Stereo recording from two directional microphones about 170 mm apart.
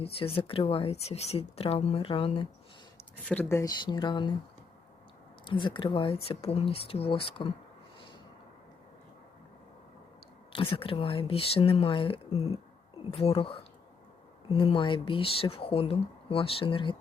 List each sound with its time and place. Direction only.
0.0 s a woman's voice: 35° left (ahead or behind)
3.2 s speech: 15° left (ahead or behind); by 4.3 s 30° left (ahead or behind)
5.5 s a woman's voice: 30° left (ahead or behind)
10.5 s a woman's voice: 30° left (ahead or behind)